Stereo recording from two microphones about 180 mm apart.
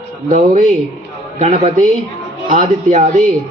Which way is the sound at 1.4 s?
40° right (ahead or behind).